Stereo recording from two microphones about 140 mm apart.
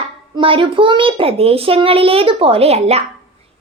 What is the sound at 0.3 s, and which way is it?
A child's voice, 40° right (ahead or behind).